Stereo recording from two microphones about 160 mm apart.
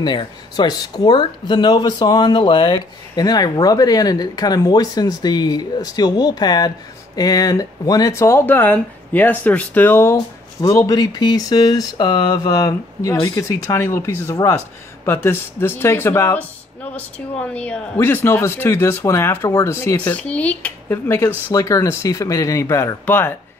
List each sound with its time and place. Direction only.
0.0 s speech: 30° left (ahead or behind); by 23.3 s 15° left (ahead or behind)